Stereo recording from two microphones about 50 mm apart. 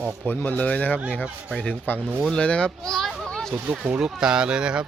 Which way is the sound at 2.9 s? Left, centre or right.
Centre.